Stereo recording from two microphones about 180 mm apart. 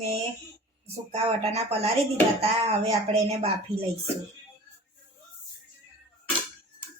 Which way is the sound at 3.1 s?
35° right (ahead or behind).